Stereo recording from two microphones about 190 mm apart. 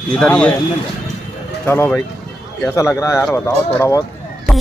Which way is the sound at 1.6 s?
10° left (ahead or behind).